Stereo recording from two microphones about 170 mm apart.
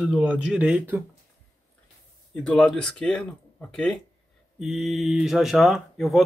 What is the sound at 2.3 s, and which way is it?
Speech, 5° left (ahead or behind).